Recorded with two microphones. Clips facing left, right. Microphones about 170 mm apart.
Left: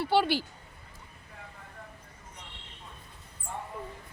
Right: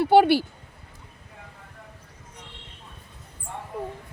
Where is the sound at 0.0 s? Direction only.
50° right (ahead or behind).